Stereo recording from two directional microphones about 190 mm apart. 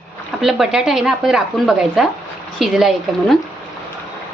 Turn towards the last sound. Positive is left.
turn(degrees=0)  # may be behind; listen again after turning